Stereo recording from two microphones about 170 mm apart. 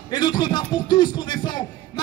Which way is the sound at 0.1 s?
25° left (ahead or behind).